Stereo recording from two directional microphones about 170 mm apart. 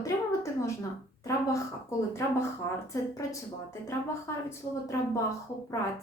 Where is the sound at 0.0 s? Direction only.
15° left (ahead or behind).